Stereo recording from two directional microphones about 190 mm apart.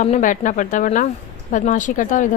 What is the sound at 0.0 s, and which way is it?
A woman's voice, 40° left (ahead or behind).